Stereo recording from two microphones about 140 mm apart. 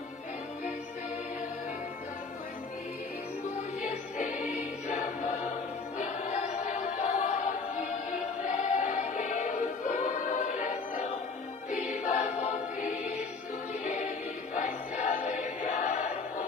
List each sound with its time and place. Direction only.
3.8 s music: 65° left (ahead or behind)
13.8 s choir: 60° left (ahead or behind)